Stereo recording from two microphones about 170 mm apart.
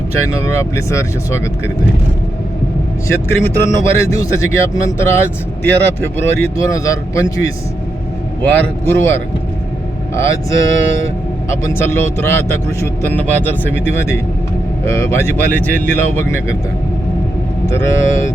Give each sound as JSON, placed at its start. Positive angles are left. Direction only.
{"t": 0.5, "sound": "a man's voice", "side_deg": 15}
{"t": 3.1, "sound": "a man's voice", "side_deg": 15}
{"t": 8.6, "sound": "a man's voice", "side_deg": 15}
{"t": 10.2, "sound": "a man's voice", "side_deg": 15}
{"t": 17.7, "sound": "a man's voice", "side_deg": 15}